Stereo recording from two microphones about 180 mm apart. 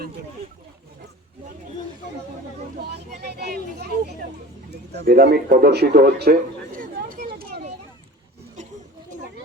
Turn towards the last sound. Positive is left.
turn(degrees=-60)  # may be behind; listen again after turning